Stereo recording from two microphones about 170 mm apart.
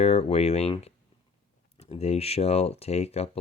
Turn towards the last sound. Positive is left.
turn(degrees=40)  # may be behind; listen again after turning